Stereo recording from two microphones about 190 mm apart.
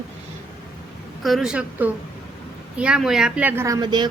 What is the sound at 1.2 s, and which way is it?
A woman's voice, centre (ahead or behind).